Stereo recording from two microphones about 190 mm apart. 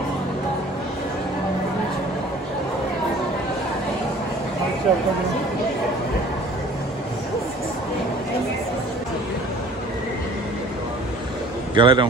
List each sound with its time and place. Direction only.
4.9 s speech: centre (ahead or behind)
11.7 s a man's voice: 25° right (ahead or behind)